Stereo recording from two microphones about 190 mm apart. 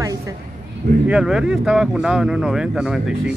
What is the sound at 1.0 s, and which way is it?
Speech, 5° right (ahead or behind).